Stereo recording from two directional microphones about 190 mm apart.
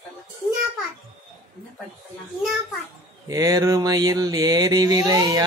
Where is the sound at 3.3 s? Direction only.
20° right (ahead or behind).